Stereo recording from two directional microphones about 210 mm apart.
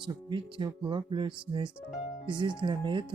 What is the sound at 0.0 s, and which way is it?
Speech, 20° right (ahead or behind).